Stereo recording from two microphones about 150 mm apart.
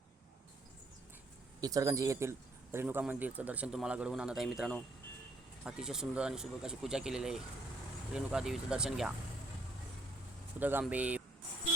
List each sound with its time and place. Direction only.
1.6 s speech: 20° right (ahead or behind); by 9.1 s 5° right (ahead or behind)
10.6 s speech: 10° right (ahead or behind)